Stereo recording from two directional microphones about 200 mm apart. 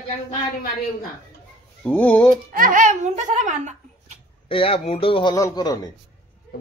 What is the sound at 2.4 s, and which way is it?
Speech, 40° right (ahead or behind).